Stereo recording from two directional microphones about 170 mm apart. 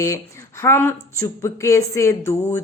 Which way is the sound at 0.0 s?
15° left (ahead or behind).